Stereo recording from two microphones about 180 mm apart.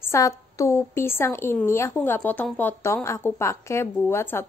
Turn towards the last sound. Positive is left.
turn(degrees=10)  # may be behind; listen again after turning